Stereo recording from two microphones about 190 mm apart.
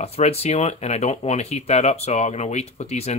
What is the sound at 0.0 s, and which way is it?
Speech, 35° left (ahead or behind).